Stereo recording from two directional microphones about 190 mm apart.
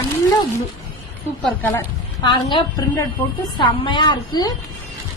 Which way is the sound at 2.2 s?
25° left (ahead or behind).